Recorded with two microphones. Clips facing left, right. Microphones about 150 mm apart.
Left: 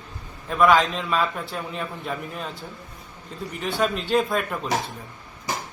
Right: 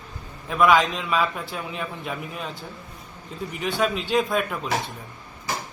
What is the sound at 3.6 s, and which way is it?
A man's voice, centre (ahead or behind).